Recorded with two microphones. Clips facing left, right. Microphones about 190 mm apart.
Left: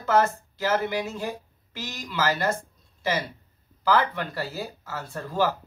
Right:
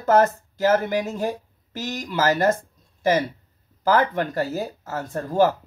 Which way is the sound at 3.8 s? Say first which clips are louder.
Right 4 dB; 45° right (ahead or behind).